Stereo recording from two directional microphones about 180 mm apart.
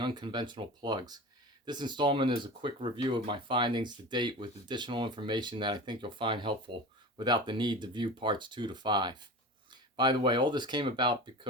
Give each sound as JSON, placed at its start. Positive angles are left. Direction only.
{"t": 0.0, "sound": "speech", "side_deg": -25}